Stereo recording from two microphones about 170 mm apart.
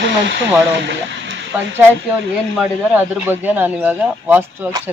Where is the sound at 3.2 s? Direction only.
10° right (ahead or behind).